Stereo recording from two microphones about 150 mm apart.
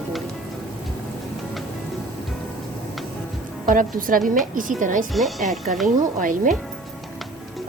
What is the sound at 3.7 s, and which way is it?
A woman's voice, 65° right (ahead or behind).